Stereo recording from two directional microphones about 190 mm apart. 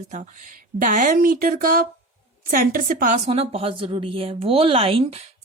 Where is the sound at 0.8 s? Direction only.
45° right (ahead or behind).